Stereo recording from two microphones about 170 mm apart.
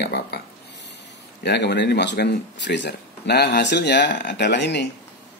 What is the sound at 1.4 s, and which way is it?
Speech, 85° left.